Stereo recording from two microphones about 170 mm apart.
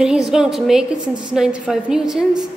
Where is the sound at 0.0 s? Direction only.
5° right (ahead or behind).